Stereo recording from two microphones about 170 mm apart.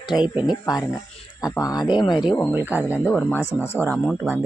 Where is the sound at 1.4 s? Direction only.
20° left (ahead or behind).